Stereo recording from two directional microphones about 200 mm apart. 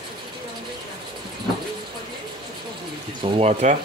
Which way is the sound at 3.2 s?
30° right (ahead or behind).